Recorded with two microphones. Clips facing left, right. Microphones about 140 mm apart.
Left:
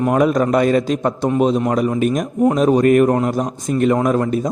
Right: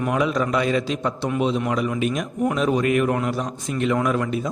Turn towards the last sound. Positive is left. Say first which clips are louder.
# left 5 dB
turn(degrees=40)  # may be behind; listen again after turning